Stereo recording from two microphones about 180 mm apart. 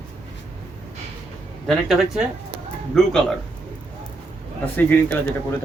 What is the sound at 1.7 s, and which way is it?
A man's voice, centre (ahead or behind).